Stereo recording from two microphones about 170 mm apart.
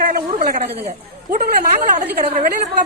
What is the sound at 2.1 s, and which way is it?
Speech, 60° right (ahead or behind).